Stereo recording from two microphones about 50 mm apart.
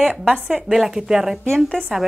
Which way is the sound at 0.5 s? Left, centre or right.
Centre.